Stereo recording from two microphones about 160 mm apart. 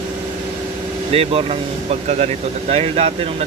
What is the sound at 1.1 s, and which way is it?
Speech, 35° right (ahead or behind).